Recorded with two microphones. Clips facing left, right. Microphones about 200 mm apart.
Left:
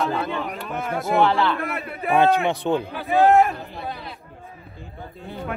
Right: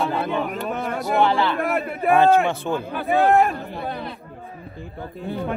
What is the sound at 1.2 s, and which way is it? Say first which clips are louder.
Speech: even; centre (ahead or behind).